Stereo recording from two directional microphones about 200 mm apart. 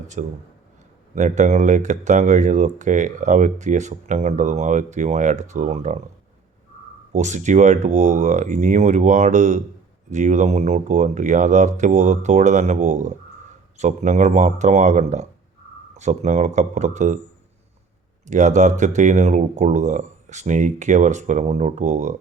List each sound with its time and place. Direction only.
0.2 s speech: 40° right (ahead or behind)
7.1 s speech: 35° right (ahead or behind)
18.3 s speech: 35° right (ahead or behind)